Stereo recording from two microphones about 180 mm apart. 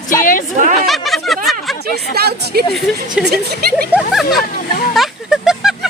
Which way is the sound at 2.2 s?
60° right (ahead or behind).